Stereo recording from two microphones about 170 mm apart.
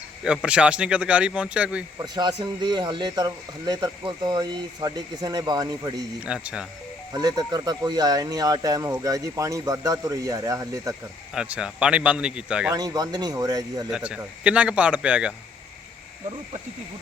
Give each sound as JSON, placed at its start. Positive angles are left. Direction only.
{"t": 0.3, "sound": "speech", "side_deg": -5}
{"t": 2.0, "sound": "speech", "side_deg": -25}
{"t": 6.2, "sound": "a man's voice", "side_deg": -5}
{"t": 7.1, "sound": "speech", "side_deg": -20}
{"t": 11.3, "sound": "a man's voice", "side_deg": -5}
{"t": 12.7, "sound": "speech", "side_deg": -20}
{"t": 13.9, "sound": "a man's voice", "side_deg": -5}